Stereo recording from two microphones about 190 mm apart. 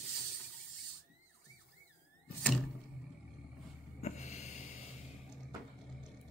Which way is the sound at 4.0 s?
35° left (ahead or behind).